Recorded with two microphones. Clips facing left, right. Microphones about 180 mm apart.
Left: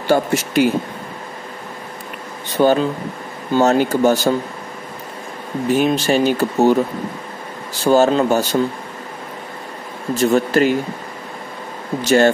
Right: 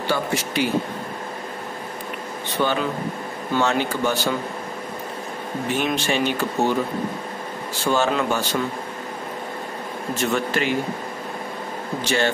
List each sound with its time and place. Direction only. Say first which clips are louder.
0.1 s speech: left 9 dB; 45° left (ahead or behind)
2.6 s speech: left 8 dB; 40° left (ahead or behind)
5.7 s speech: left 8 dB; 40° left (ahead or behind)
7.8 s speech: left 8 dB; 40° left (ahead or behind)
10.1 s speech: left 8 dB; 35° left (ahead or behind)
12.0 s speech: left 9 dB; 45° left (ahead or behind)